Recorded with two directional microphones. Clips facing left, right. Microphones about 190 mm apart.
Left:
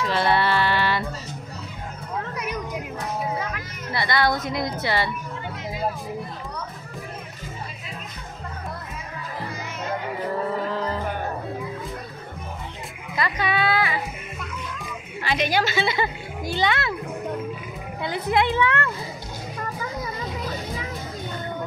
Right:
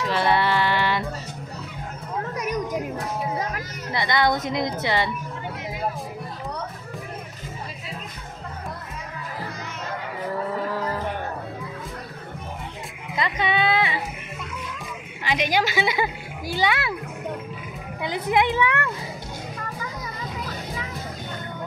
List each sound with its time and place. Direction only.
0.0 s music: 15° right (ahead or behind)
2.3 s a sound: 45° right (ahead or behind)
3.9 s a woman's voice: 15° right (ahead or behind)
13.1 s a sound: 20° right (ahead or behind)
15.2 s a woman's voice: 15° right (ahead or behind)
18.0 s a woman's voice: 15° right (ahead or behind)